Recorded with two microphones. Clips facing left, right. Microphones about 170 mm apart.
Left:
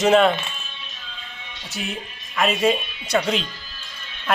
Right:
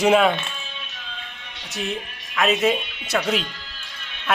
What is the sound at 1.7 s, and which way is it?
A man's voice, centre (ahead or behind).